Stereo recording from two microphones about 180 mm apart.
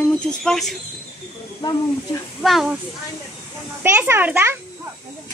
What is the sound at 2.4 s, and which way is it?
Speech, centre (ahead or behind).